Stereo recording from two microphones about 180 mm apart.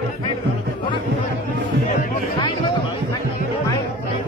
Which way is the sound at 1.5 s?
45° left (ahead or behind).